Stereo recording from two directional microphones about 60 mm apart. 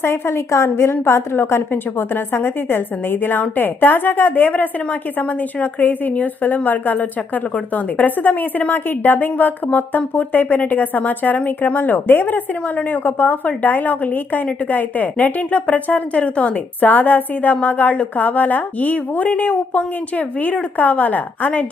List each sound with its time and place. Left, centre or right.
0.0 s a woman's voice: left